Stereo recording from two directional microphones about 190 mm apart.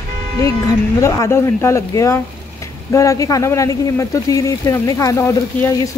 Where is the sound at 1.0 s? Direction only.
15° left (ahead or behind).